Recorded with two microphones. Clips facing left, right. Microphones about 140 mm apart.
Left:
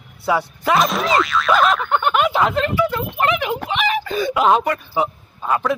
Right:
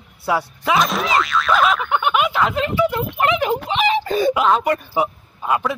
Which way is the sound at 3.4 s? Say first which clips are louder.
Right 2 dB; 30° right (ahead or behind).